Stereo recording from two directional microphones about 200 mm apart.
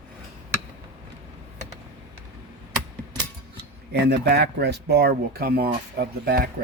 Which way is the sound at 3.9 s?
55° right (ahead or behind).